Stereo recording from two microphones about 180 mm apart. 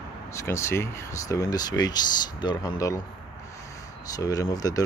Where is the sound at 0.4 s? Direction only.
15° left (ahead or behind).